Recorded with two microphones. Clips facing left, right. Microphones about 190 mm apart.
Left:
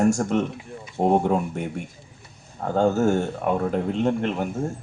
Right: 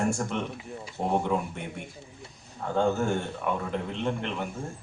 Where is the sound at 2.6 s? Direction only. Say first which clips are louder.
Left 6 dB; 40° left (ahead or behind).